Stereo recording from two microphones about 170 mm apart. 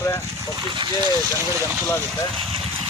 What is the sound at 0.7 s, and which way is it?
Speech, 30° right (ahead or behind).